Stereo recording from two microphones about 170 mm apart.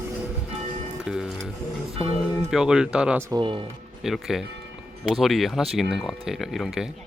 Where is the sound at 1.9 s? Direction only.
35° right (ahead or behind).